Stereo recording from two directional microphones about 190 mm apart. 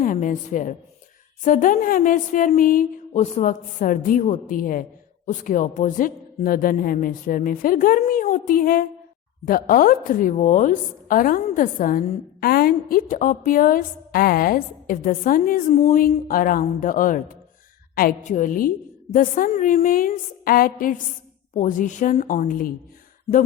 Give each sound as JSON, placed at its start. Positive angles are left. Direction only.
{"t": 0.0, "sound": "a woman's voice", "side_deg": 45}